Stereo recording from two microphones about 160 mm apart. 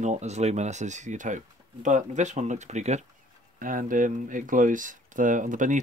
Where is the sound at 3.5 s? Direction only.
55° right (ahead or behind).